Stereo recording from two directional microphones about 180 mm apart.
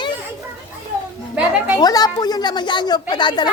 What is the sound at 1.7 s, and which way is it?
Speech, 20° left (ahead or behind).